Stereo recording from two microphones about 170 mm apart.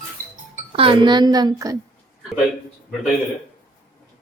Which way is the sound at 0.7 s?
30° right (ahead or behind).